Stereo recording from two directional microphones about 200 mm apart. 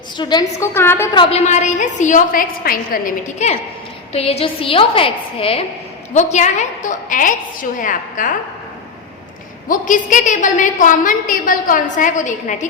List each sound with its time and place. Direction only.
0.2 s a woman's voice: 20° left (ahead or behind)
1.1 s a woman's voice: 25° left (ahead or behind)
9.6 s a woman's voice: 40° left (ahead or behind)